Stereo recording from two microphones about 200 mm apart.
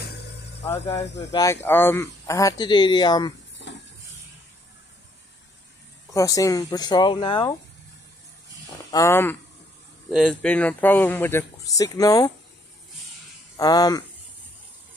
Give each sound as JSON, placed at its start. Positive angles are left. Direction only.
{"t": 0.7, "sound": "speech", "side_deg": 15}
{"t": 6.1, "sound": "speech", "side_deg": 15}
{"t": 8.9, "sound": "speech", "side_deg": 15}
{"t": 13.6, "sound": "speech", "side_deg": 20}